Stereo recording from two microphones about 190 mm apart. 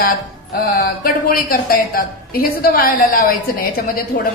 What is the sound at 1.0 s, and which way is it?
A woman's voice, 50° left (ahead or behind).